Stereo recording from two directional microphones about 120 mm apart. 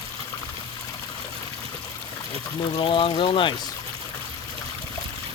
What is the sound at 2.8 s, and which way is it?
Speech, 50° left (ahead or behind).